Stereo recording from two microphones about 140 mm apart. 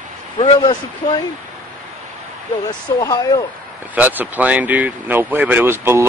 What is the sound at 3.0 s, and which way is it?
Speech, 25° left (ahead or behind).